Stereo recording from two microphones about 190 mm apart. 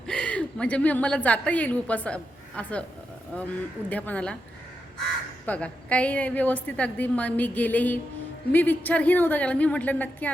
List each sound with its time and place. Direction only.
0.1 s a woman's voice: 5° left (ahead or behind)
5.5 s a woman's voice: 5° left (ahead or behind)